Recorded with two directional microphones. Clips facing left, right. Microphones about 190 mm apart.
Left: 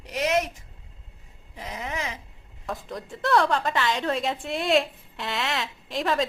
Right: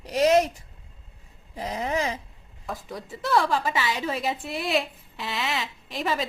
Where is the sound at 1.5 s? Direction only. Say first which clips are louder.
Right 6 dB; 35° right (ahead or behind).